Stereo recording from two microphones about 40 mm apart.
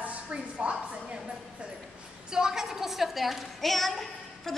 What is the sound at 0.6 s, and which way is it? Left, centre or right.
Speech, centre.